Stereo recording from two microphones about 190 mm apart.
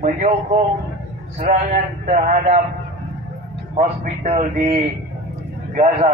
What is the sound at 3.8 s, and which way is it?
A man's voice, 35° right (ahead or behind).